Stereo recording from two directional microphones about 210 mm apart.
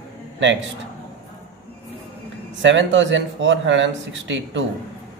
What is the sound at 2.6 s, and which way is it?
Speech, 60° right (ahead or behind).